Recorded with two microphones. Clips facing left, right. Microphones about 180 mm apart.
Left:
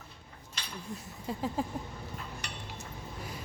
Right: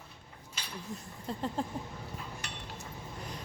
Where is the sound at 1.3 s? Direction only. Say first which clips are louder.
Left 1 dB; 5° left (ahead or behind).